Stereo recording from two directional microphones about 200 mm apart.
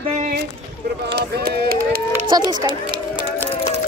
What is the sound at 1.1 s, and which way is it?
Speech, 55° right (ahead or behind).